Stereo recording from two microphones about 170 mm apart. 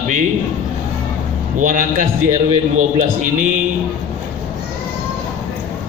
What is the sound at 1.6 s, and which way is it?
A man's voice, 50° right (ahead or behind).